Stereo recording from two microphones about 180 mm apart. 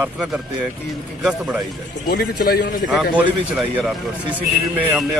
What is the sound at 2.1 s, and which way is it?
Speech, 55° left (ahead or behind).